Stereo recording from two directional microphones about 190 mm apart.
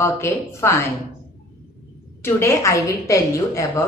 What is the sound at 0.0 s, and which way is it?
Speech, 15° left (ahead or behind).